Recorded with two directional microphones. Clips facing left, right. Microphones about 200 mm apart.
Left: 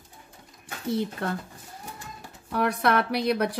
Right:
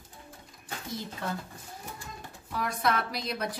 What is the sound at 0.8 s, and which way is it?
Speech, 65° left (ahead or behind).